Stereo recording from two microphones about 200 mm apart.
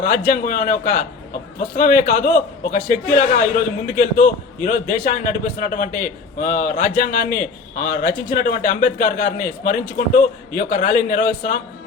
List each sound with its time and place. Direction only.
0.3 s a man's voice: 45° left (ahead or behind)